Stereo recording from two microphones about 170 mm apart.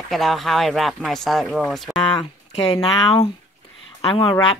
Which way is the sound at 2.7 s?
30° left (ahead or behind).